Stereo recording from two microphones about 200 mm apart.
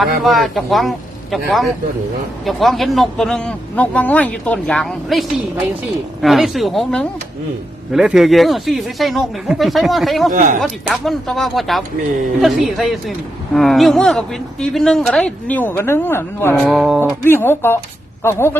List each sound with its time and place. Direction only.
0.2 s speech: centre (ahead or behind)
6.2 s speech: centre (ahead or behind)
10.3 s speech: 40° right (ahead or behind)
10.6 s speech: centre (ahead or behind)
17.2 s speech: 10° left (ahead or behind)